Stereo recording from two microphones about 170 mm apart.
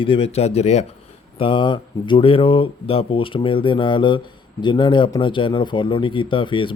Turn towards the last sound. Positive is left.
turn(degrees=30)  # may be behind; listen again after turning